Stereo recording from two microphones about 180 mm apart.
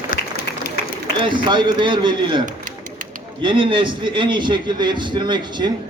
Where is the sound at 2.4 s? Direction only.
45° right (ahead or behind).